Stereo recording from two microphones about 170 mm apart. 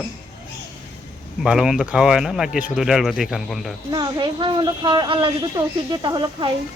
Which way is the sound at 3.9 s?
25° right (ahead or behind).